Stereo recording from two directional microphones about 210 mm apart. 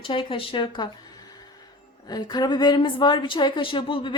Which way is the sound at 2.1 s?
20° left (ahead or behind).